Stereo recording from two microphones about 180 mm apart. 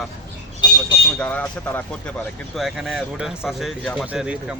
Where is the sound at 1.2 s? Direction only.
10° left (ahead or behind).